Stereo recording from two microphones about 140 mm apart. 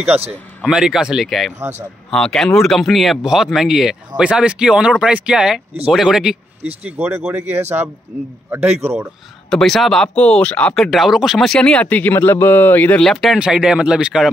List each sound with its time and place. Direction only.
0.7 s speech: 5° right (ahead or behind)
6.9 s speech: 15° right (ahead or behind)
9.5 s speech: centre (ahead or behind)